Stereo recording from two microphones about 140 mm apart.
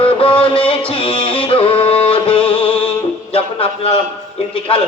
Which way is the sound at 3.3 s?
40° left (ahead or behind).